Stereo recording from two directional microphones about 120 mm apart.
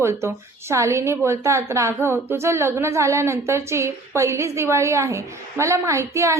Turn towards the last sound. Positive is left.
turn(degrees=-25)  # may be behind; listen again after turning